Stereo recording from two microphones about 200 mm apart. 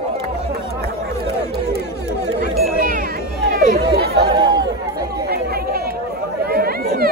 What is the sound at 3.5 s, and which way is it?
Chatter, 50° right (ahead or behind).